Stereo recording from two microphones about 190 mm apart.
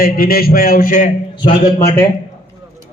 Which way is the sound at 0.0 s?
50° left (ahead or behind).